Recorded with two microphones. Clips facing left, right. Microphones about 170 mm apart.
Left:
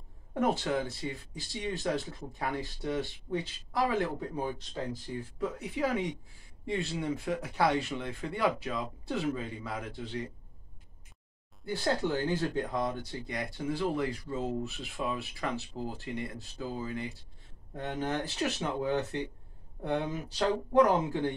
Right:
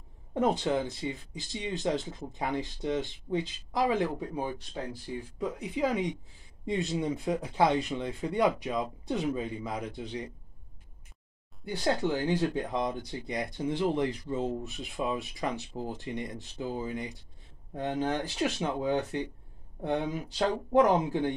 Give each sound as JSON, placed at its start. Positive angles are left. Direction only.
{"t": 0.3, "sound": "speech", "side_deg": -20}
{"t": 5.4, "sound": "speech", "side_deg": -15}
{"t": 11.6, "sound": "speech", "side_deg": -15}